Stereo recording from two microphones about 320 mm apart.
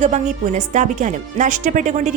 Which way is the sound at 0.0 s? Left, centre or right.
Right.